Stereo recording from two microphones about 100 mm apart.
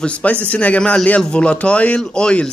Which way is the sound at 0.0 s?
10° left (ahead or behind).